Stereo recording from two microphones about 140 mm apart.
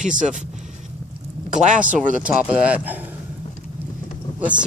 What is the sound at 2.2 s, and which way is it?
Speech, 10° right (ahead or behind).